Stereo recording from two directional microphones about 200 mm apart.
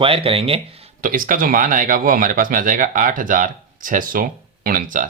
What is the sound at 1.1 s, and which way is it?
Speech, 45° right (ahead or behind).